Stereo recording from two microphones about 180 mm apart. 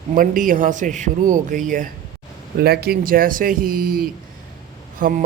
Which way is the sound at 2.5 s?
60° right (ahead or behind).